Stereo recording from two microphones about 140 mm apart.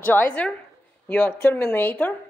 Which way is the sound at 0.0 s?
15° left (ahead or behind).